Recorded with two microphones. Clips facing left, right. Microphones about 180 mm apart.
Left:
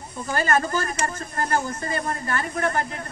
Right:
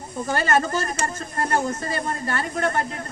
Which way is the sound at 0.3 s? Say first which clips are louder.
Right 1 dB; 30° right (ahead or behind).